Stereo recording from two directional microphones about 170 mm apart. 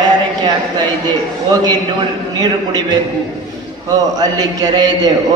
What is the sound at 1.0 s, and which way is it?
A man's voice, 25° right (ahead or behind).